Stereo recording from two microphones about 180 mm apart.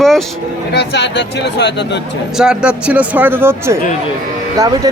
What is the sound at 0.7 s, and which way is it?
Speech, 65° left (ahead or behind).